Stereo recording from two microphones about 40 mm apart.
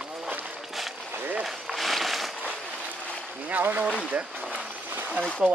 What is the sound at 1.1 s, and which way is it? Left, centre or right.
Run, right.